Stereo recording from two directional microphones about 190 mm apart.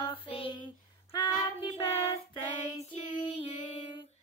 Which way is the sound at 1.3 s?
25° left (ahead or behind).